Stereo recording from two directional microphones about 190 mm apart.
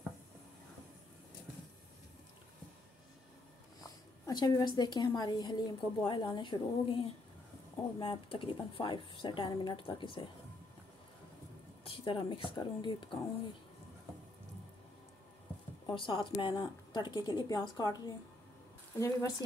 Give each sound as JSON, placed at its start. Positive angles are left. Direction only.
{"t": 4.3, "sound": "a woman's voice", "side_deg": 20}
{"t": 8.0, "sound": "a woman's voice", "side_deg": 25}
{"t": 11.8, "sound": "a sound", "side_deg": 25}
{"t": 12.4, "sound": "a woman's voice", "side_deg": 25}
{"t": 15.9, "sound": "a woman's voice", "side_deg": 25}